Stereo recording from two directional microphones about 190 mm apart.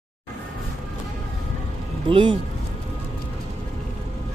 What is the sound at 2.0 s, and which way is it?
Speech, 25° right (ahead or behind).